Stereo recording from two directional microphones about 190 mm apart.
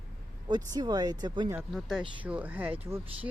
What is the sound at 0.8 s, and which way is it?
Speech, 20° right (ahead or behind).